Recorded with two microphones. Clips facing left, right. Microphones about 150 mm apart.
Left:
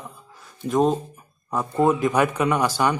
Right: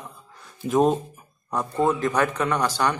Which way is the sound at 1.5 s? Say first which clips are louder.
Left 2 dB; 5° left (ahead or behind).